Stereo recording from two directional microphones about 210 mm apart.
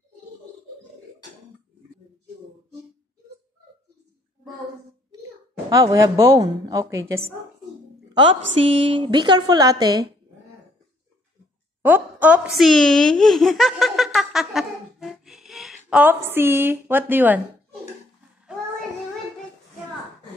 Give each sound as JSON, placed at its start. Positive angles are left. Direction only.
{"t": 5.7, "sound": "a woman's voice", "side_deg": -15}
{"t": 8.9, "sound": "a woman's voice", "side_deg": -20}
{"t": 11.8, "sound": "baby laughter", "side_deg": -10}